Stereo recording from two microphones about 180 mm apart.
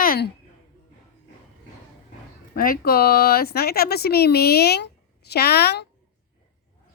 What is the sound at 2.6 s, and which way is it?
Speech, 55° left (ahead or behind).